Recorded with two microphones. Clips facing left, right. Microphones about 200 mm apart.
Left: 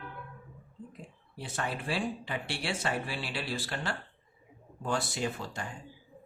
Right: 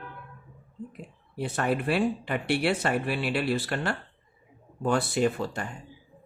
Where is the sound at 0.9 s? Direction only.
60° right (ahead or behind).